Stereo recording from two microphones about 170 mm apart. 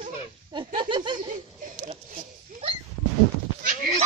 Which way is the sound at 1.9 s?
35° right (ahead or behind).